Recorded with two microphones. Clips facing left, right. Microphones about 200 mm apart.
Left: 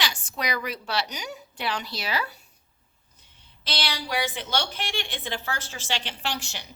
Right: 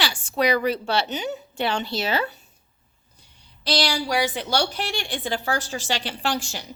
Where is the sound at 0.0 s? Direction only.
30° right (ahead or behind).